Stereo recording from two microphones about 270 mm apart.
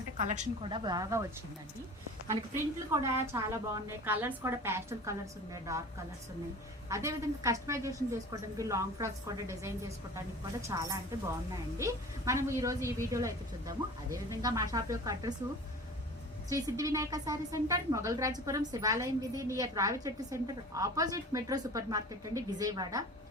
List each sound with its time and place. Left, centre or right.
0.2 s a woman's voice: right
2.9 s a woman's voice: centre
6.9 s a woman's voice: centre
16.5 s a woman's voice: centre